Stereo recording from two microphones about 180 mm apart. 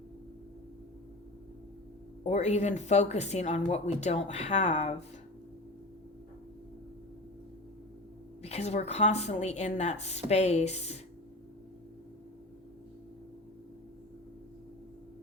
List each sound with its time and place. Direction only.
2.3 s speech: 40° left (ahead or behind)
8.4 s speech: 35° left (ahead or behind)